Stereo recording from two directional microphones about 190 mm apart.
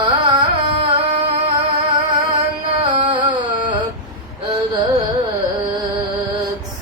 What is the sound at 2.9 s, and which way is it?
Carnatic music, 25° right (ahead or behind).